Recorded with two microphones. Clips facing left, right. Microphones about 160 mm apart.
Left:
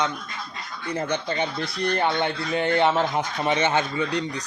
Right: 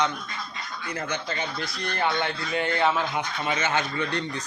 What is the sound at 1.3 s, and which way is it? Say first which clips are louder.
Speech: left 5 dB; 25° left (ahead or behind).